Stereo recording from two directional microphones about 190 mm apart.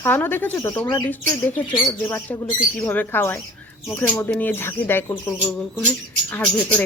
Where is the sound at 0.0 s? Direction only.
10° left (ahead or behind).